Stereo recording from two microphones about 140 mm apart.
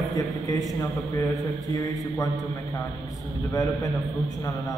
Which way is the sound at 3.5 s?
25° left (ahead or behind).